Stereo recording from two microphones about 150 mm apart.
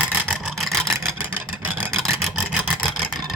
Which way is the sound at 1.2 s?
10° right (ahead or behind).